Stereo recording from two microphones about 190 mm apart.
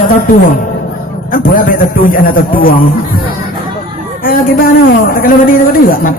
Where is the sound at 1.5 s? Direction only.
50° left (ahead or behind).